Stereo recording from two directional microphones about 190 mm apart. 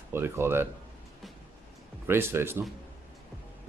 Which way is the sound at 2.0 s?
10° right (ahead or behind).